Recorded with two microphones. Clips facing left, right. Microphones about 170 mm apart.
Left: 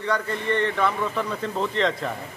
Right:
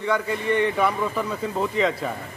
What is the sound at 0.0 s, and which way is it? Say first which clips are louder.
A man's voice: right 2 dB; 10° right (ahead or behind).